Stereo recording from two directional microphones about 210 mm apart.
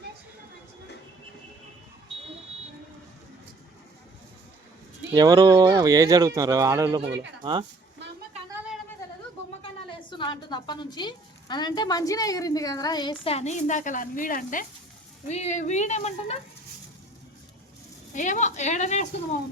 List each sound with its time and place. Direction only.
5.1 s speech: 15° right (ahead or behind)
8.0 s a sound: 55° right (ahead or behind)
9.8 s a woman's voice: 20° left (ahead or behind)
18.1 s a woman's voice: 35° left (ahead or behind)